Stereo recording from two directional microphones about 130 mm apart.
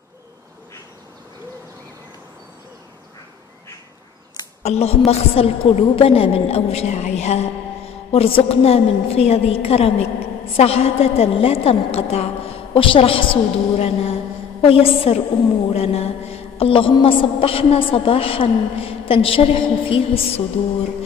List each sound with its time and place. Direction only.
4.6 s a woman's voice: 50° left (ahead or behind)